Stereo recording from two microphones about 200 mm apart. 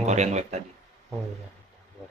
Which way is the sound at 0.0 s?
35° right (ahead or behind).